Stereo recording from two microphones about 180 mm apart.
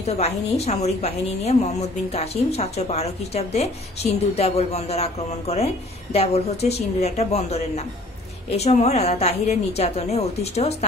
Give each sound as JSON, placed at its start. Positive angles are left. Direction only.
{"t": 0.0, "sound": "a woman's voice", "side_deg": 35}